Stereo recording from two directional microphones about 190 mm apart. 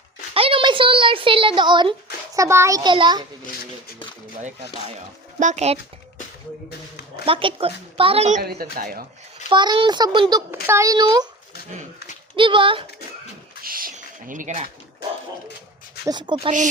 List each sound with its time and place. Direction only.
0.3 s speech: 30° right (ahead or behind)
5.4 s speech: 35° right (ahead or behind)
7.3 s a child's voice: 30° right (ahead or behind)
8.4 s a woman's voice: 55° right (ahead or behind)
9.5 s a child's voice: 25° right (ahead or behind)
12.4 s a child's voice: 25° right (ahead or behind)
13.6 s a sound: 50° right (ahead or behind)
16.0 s a child's voice: 25° right (ahead or behind)